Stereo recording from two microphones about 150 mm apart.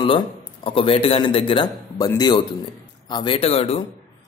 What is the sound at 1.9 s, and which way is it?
A man's voice, 25° left (ahead or behind).